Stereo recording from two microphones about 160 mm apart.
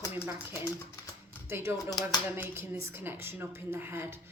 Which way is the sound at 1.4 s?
15° right (ahead or behind).